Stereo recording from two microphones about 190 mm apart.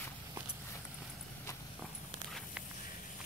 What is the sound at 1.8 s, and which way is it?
Walk, centre (ahead or behind).